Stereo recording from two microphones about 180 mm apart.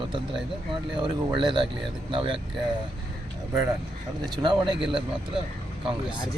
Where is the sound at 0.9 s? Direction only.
25° right (ahead or behind).